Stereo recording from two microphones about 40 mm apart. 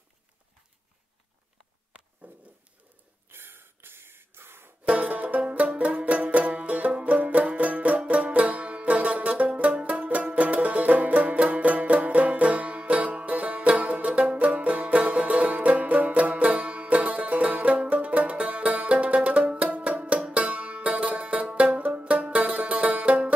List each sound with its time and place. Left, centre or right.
2.2 s a sound: right
3.3 s a sound: right
4.8 s banjo: right
5.4 s music: right
6.9 s banjo: right
7.2 s music: right